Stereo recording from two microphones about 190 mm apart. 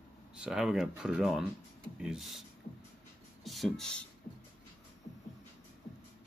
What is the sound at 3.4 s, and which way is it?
Speech, centre (ahead or behind).